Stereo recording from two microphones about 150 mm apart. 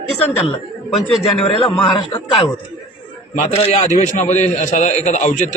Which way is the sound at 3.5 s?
45° left (ahead or behind).